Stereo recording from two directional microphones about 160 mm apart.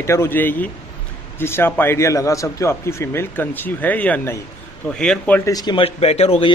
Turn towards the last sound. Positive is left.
turn(degrees=40)  # may be behind; listen again after turning